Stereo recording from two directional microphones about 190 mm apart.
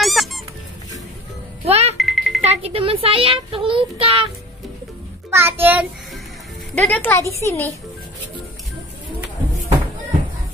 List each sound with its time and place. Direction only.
0.0 s squeak: centre (ahead or behind)
1.7 s a child's voice: 35° right (ahead or behind)
2.0 s music: centre (ahead or behind)
2.4 s a child's voice: 35° right (ahead or behind)
5.3 s a child's voice: 10° right (ahead or behind)
6.7 s speech: 5° left (ahead or behind)